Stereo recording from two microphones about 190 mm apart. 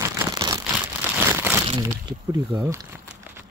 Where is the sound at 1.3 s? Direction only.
10° right (ahead or behind).